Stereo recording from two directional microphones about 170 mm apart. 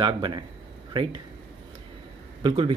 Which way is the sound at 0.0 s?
30° right (ahead or behind).